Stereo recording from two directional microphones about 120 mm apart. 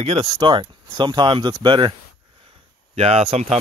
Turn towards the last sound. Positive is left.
turn(degrees=-60)  # may be behind; listen again after turning